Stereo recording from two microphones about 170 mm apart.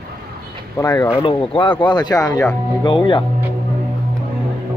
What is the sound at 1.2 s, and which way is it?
Speech, 30° left (ahead or behind).